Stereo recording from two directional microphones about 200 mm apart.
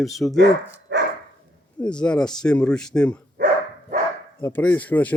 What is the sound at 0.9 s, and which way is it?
Dog, 60° right (ahead or behind).